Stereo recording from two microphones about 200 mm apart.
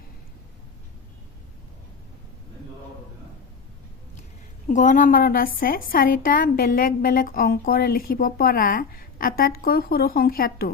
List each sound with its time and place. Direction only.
4.7 s a woman's voice: 40° left (ahead or behind)